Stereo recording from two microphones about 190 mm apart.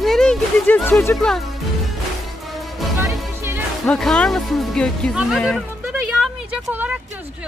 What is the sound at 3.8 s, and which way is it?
Speech, 5° left (ahead or behind).